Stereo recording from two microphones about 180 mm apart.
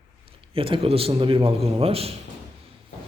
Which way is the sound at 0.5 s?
30° right (ahead or behind).